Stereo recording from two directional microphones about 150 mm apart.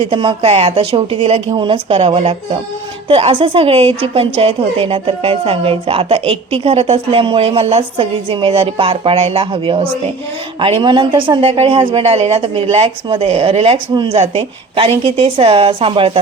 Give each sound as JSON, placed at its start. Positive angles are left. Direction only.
{"t": 0.0, "sound": "a woman's voice", "side_deg": -35}